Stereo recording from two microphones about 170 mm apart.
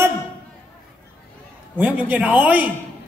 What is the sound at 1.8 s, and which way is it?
Speech, 10° right (ahead or behind).